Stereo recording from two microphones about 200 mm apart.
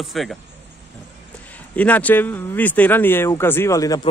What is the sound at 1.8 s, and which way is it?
Speech, 10° left (ahead or behind).